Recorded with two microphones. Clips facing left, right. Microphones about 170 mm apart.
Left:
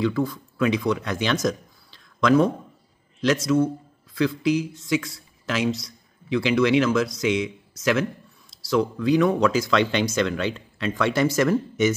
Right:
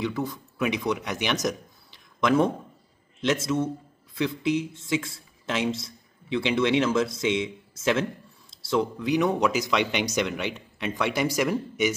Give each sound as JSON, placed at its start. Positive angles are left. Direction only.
{"t": 0.0, "sound": "a man's voice", "side_deg": -20}